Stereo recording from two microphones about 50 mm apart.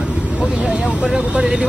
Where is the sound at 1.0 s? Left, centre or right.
Centre.